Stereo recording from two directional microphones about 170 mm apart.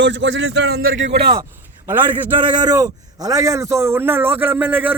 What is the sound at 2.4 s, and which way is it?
A man's voice, 25° right (ahead or behind).